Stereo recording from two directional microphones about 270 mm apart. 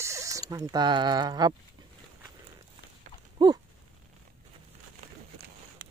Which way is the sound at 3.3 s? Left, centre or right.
Centre.